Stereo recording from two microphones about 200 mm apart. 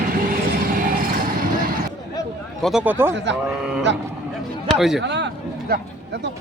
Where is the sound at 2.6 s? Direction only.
Centre (ahead or behind).